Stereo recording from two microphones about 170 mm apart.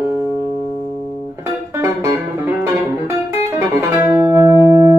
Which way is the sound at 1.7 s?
20° right (ahead or behind).